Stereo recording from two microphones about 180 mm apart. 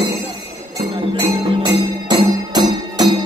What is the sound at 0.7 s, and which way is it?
Music, 25° right (ahead or behind).